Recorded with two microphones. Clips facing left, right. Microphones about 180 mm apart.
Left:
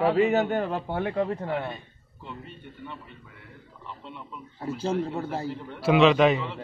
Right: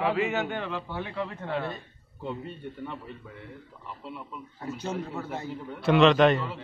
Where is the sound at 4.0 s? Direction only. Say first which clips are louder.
Right 4 dB; 5° right (ahead or behind).